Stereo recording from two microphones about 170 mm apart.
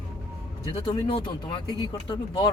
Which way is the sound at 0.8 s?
30° left (ahead or behind).